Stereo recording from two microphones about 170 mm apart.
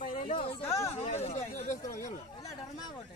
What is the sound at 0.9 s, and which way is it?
Speech, 40° left (ahead or behind).